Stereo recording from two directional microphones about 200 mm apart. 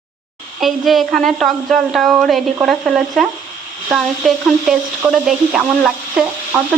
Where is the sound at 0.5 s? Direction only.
Centre (ahead or behind).